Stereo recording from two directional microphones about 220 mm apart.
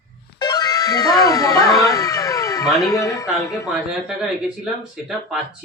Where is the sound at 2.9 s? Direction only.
15° left (ahead or behind).